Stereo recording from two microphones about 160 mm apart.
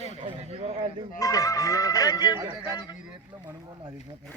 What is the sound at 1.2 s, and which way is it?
Speech, 20° left (ahead or behind).